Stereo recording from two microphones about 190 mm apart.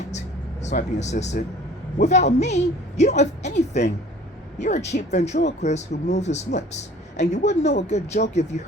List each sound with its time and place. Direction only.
0.1 s music: 40° left (ahead or behind)
2.0 s speech: 35° left (ahead or behind)